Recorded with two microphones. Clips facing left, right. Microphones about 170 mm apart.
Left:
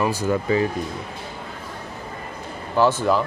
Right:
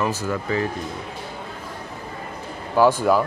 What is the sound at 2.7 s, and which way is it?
Speech, 10° right (ahead or behind).